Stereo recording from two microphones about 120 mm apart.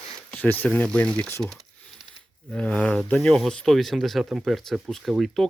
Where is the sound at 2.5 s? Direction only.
10° left (ahead or behind).